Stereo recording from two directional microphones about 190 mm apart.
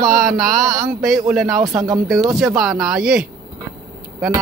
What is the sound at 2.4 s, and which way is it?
Speech, centre (ahead or behind).